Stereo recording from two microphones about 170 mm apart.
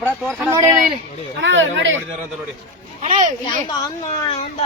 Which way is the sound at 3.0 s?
50° right (ahead or behind).